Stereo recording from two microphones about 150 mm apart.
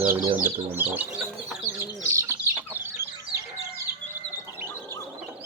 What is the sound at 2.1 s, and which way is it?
Chicken, 20° right (ahead or behind).